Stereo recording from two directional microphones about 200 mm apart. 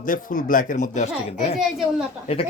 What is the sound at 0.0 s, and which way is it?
Speech, 45° left (ahead or behind).